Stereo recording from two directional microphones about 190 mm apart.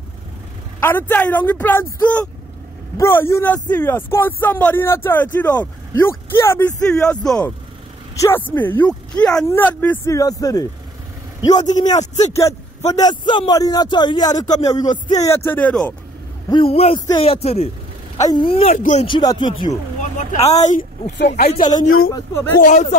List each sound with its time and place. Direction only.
0.7 s speech: 10° left (ahead or behind)
11.9 s speech: 35° left (ahead or behind)
12.9 s speech: 20° left (ahead or behind); by 15.9 s 5° left (ahead or behind)
16.4 s speech: 30° left (ahead or behind)
19.0 s speech: 25° left (ahead or behind)
20.0 s speech: 40° left (ahead or behind)
22.1 s speech: 15° left (ahead or behind)
22.6 s speech: 40° left (ahead or behind)